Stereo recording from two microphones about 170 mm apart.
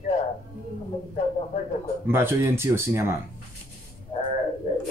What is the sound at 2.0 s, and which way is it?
Speech, 15° right (ahead or behind).